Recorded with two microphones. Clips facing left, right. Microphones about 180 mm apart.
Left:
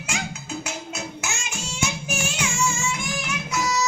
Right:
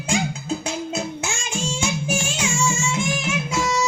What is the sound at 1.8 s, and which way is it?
Music, 30° right (ahead or behind).